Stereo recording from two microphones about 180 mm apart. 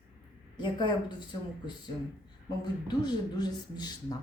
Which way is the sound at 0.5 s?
25° left (ahead or behind).